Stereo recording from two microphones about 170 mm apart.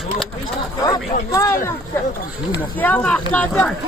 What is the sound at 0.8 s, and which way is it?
Speech, 20° left (ahead or behind).